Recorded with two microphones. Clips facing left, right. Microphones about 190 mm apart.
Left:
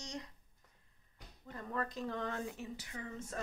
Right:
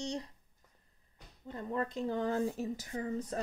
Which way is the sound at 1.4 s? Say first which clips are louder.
Right 5 dB; 25° right (ahead or behind).